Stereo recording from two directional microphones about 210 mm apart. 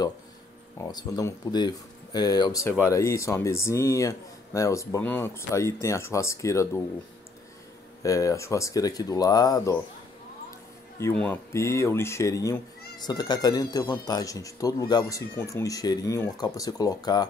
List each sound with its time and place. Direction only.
0.7 s speech: 15° left (ahead or behind)
8.0 s speech: 15° left (ahead or behind)
11.0 s speech: 10° left (ahead or behind)